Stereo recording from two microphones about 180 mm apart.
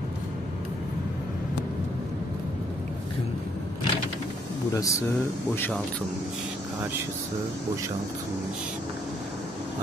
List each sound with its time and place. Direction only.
4.7 s speech: 20° left (ahead or behind)